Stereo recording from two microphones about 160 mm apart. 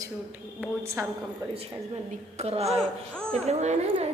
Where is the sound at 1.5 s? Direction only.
40° right (ahead or behind).